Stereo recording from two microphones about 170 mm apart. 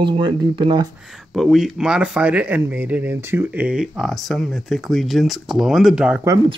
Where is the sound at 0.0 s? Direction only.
30° right (ahead or behind).